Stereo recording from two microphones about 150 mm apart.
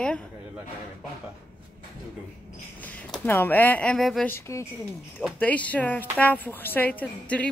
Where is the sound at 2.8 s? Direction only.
10° left (ahead or behind).